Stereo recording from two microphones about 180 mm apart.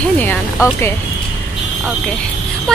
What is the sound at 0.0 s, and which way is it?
Music, 10° left (ahead or behind).